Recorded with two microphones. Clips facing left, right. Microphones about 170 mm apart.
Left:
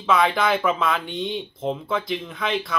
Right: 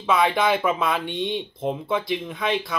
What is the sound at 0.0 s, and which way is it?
Speech, 5° right (ahead or behind).